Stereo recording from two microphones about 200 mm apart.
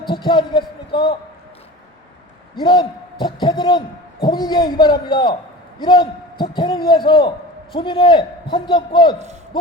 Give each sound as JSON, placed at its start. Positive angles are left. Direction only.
{"t": 0.1, "sound": "speech", "side_deg": 25}
{"t": 2.6, "sound": "a man's voice", "side_deg": 25}